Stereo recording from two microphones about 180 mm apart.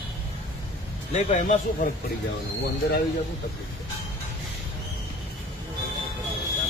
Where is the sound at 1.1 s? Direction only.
40° left (ahead or behind).